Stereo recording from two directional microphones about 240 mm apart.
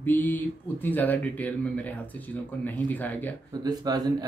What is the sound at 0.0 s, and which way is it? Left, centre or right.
Speech, centre.